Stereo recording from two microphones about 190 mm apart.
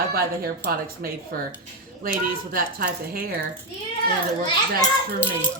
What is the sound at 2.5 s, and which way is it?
Speech, 50° right (ahead or behind).